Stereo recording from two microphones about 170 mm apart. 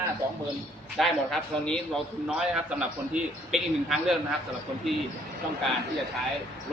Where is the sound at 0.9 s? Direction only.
Centre (ahead or behind).